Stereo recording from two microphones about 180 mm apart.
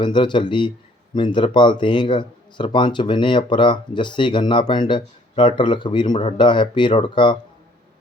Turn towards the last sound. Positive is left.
turn(degrees=25)  # may be behind; listen again after turning